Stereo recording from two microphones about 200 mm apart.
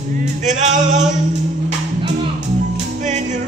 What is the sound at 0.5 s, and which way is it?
Music, 35° right (ahead or behind).